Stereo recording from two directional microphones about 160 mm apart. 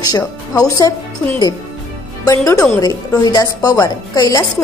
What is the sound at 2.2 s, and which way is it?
A woman's voice, 20° left (ahead or behind).